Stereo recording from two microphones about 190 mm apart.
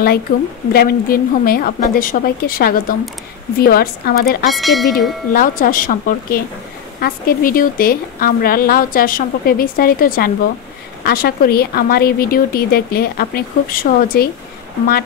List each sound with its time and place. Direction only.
0.3 s a woman's voice: 45° left (ahead or behind)
4.5 s speech: centre (ahead or behind)
5.3 s a woman's voice: 50° left (ahead or behind)